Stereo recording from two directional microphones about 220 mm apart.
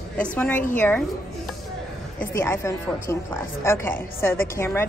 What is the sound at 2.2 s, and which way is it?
A woman's voice, 10° left (ahead or behind).